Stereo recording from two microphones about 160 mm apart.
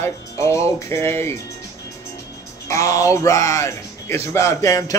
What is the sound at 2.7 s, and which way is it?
Speech, 20° left (ahead or behind).